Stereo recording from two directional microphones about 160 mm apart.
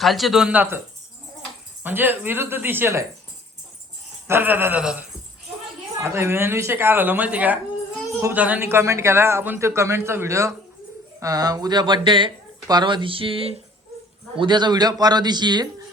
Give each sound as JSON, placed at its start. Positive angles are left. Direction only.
{"t": 0.0, "sound": "speech", "side_deg": 0}
{"t": 1.8, "sound": "speech", "side_deg": -10}
{"t": 4.3, "sound": "speech", "side_deg": -10}